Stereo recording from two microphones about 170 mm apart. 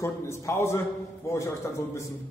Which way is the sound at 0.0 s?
15° left (ahead or behind).